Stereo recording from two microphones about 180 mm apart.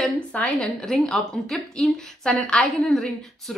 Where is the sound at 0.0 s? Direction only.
5° left (ahead or behind).